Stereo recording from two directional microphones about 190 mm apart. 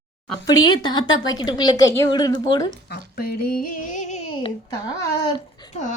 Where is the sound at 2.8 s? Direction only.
55° left (ahead or behind).